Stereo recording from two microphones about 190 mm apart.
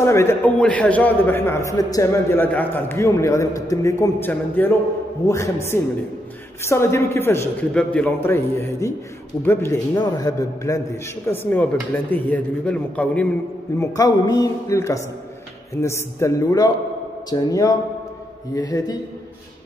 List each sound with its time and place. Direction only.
0.0 s a man's voice: 15° left (ahead or behind)
13.7 s a man's voice: 20° left (ahead or behind)